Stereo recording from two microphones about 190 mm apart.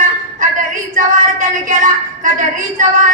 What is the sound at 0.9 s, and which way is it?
A woman's voice, 45° right (ahead or behind).